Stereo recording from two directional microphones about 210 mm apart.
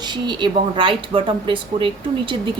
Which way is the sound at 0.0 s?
20° right (ahead or behind).